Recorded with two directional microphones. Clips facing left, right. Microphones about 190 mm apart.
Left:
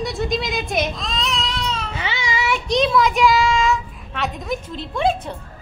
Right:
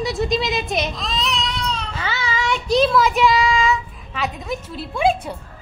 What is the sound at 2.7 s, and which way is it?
A woman's voice, centre (ahead or behind).